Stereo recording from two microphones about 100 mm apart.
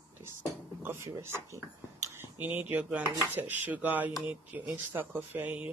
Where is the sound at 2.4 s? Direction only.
20° right (ahead or behind).